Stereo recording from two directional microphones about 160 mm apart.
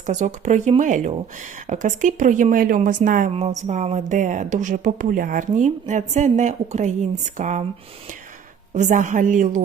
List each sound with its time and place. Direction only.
0.0 s speech: 45° right (ahead or behind)
8.7 s speech: 50° right (ahead or behind)